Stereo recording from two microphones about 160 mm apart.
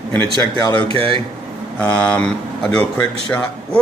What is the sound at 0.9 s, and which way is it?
Speech, 35° right (ahead or behind).